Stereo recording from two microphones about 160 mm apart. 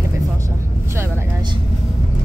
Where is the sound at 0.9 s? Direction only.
15° right (ahead or behind).